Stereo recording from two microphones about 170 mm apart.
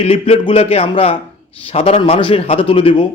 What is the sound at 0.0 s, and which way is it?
A man's voice, 35° left (ahead or behind).